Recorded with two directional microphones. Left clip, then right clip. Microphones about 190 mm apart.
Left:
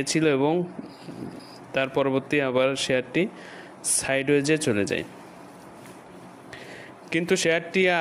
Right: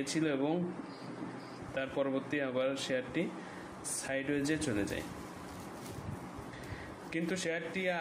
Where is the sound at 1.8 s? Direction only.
50° left (ahead or behind).